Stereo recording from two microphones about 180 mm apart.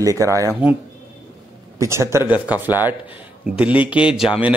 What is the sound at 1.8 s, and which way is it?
A man's voice, 15° right (ahead or behind).